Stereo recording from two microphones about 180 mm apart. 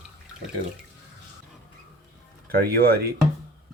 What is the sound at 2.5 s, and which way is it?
Speech, 55° right (ahead or behind).